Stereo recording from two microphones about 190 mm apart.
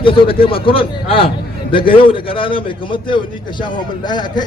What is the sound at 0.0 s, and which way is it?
A man's voice, 30° left (ahead or behind).